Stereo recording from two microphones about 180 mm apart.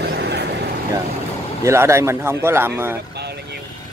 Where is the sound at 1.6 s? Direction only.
15° right (ahead or behind).